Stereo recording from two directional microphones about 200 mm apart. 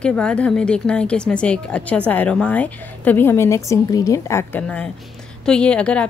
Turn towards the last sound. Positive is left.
turn(degrees=5)  # may be behind; listen again after turning